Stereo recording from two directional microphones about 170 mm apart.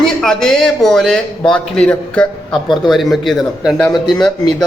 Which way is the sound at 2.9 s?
Centre (ahead or behind).